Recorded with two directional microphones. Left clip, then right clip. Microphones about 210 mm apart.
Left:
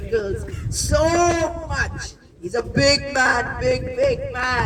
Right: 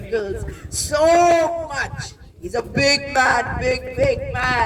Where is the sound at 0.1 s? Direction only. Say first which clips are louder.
Left 1 dB; 20° right (ahead or behind).